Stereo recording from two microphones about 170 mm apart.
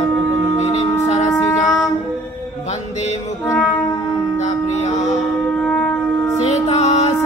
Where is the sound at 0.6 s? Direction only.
40° left (ahead or behind).